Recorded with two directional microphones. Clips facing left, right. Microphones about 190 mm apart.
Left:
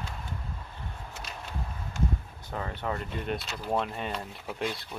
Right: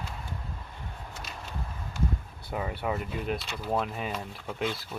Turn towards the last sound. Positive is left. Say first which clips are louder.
# right 1 dB
turn(degrees=0)  # may be behind; listen again after turning